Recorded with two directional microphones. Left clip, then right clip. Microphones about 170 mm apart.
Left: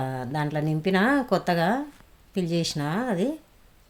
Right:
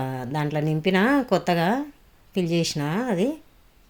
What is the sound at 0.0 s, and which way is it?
Speech, 5° right (ahead or behind).